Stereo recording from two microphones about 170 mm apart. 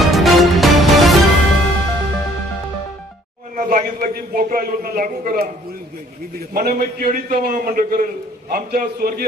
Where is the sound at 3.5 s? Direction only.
55° right (ahead or behind).